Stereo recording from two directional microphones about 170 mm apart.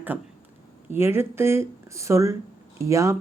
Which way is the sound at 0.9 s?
15° right (ahead or behind).